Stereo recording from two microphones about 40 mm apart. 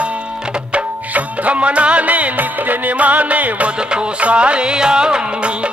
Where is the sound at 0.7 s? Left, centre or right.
Right.